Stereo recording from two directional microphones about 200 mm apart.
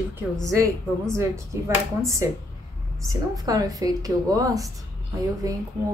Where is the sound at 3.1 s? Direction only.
15° right (ahead or behind).